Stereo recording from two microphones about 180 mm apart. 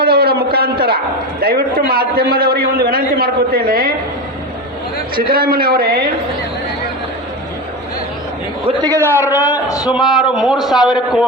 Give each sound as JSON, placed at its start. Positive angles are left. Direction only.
{"t": 0.0, "sound": "a sound", "side_deg": -60}
{"t": 1.4, "sound": "a man's voice", "side_deg": -55}
{"t": 5.1, "sound": "a man's voice", "side_deg": -55}
{"t": 8.8, "sound": "a man's voice", "side_deg": -15}
{"t": 9.2, "sound": "a man's voice", "side_deg": 20}
{"t": 9.9, "sound": "speech", "side_deg": 0}